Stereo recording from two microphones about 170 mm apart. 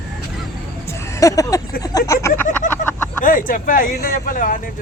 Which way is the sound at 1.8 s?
20° left (ahead or behind).